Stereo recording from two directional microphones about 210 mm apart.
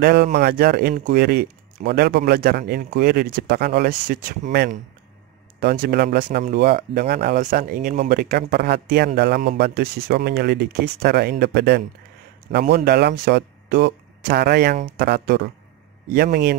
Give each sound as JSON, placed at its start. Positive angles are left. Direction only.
{"t": 0.0, "sound": "a man's voice", "side_deg": -50}